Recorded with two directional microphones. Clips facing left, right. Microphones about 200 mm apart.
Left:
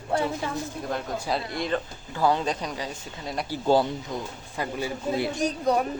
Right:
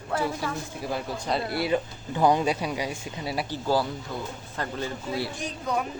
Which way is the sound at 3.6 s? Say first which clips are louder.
Left 4 dB; 25° left (ahead or behind).